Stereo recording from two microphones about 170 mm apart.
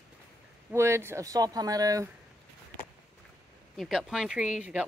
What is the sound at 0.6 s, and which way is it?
Speech, 15° right (ahead or behind).